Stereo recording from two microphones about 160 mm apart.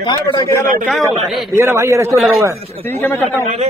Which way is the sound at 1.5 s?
15° right (ahead or behind).